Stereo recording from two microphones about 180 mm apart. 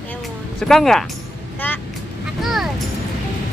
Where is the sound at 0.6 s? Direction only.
5° left (ahead or behind).